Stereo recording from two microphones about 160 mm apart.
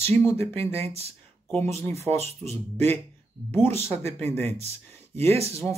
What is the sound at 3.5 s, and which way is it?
Speech, 15° left (ahead or behind).